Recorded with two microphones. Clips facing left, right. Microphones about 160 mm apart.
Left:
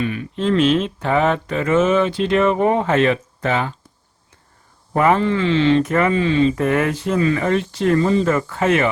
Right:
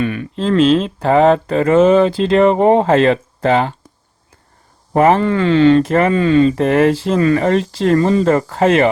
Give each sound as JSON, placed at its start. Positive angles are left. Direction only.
{"t": 0.0, "sound": "speech", "side_deg": -55}
{"t": 0.3, "sound": "speech", "side_deg": -30}
{"t": 4.9, "sound": "speech", "side_deg": -30}
{"t": 5.2, "sound": "speech", "side_deg": -45}
{"t": 5.9, "sound": "speech", "side_deg": -35}
{"t": 6.1, "sound": "speech", "side_deg": -45}
{"t": 6.6, "sound": "speech", "side_deg": -30}
{"t": 7.2, "sound": "speech", "side_deg": -40}